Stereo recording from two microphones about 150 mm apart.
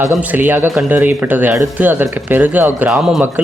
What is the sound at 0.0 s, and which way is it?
Speech, 15° right (ahead or behind).